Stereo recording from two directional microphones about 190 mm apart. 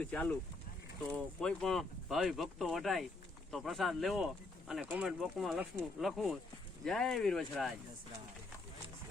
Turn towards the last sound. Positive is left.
turn(degrees=0)  # may be behind; listen again after turning